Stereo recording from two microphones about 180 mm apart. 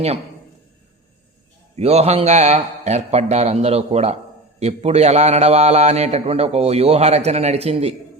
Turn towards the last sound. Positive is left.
turn(degrees=-35)  # may be behind; listen again after turning